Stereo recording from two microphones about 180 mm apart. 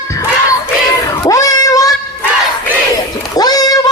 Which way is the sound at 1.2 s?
20° left (ahead or behind).